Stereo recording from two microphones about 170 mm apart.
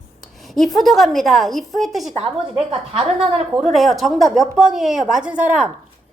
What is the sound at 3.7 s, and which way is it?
A woman's voice, centre (ahead or behind).